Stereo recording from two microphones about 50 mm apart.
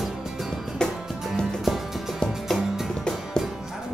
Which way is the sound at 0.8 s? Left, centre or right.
Centre.